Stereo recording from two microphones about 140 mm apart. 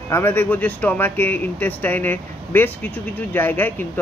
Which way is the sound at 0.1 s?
15° left (ahead or behind).